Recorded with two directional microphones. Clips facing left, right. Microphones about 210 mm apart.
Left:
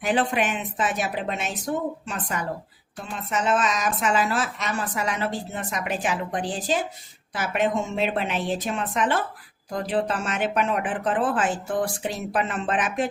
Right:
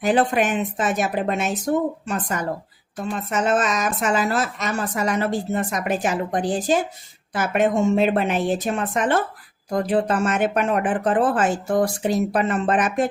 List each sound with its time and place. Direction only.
0.0 s a woman's voice: 40° right (ahead or behind)